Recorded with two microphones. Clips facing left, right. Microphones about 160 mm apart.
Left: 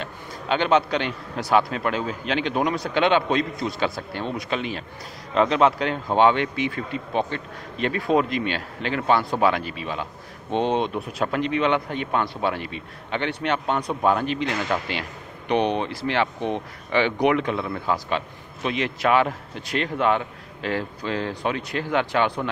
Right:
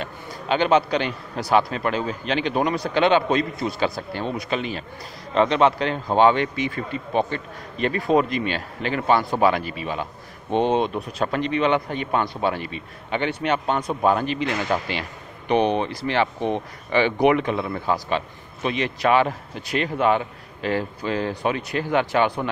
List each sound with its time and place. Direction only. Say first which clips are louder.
0.0 s a man's voice: right 1 dB; 5° right (ahead or behind)
11.0 s a man's voice: even; 5° left (ahead or behind)